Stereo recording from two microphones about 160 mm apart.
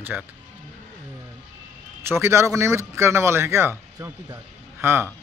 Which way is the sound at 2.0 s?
15° right (ahead or behind).